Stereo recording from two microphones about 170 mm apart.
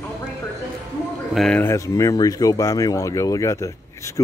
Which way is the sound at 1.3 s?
5° left (ahead or behind).